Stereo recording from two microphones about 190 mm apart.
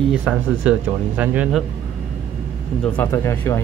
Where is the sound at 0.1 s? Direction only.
5° right (ahead or behind).